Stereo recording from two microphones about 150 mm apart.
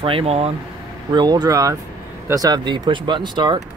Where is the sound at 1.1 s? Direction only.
25° right (ahead or behind).